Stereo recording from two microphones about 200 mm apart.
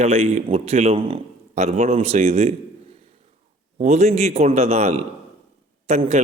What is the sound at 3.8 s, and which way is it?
A man's voice, 35° right (ahead or behind).